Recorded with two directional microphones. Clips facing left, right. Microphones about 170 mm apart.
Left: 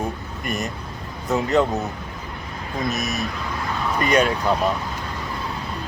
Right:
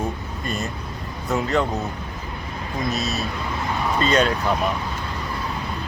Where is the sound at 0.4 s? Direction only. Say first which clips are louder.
Left 1 dB; 20° left (ahead or behind).